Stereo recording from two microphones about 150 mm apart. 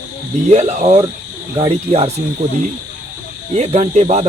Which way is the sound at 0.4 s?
50° right (ahead or behind).